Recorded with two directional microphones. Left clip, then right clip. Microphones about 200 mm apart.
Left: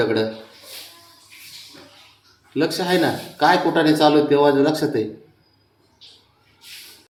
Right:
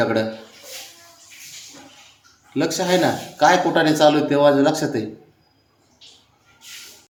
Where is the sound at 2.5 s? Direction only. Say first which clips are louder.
Even; 10° right (ahead or behind).